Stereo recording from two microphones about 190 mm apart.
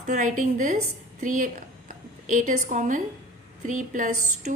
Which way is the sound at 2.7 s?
40° right (ahead or behind).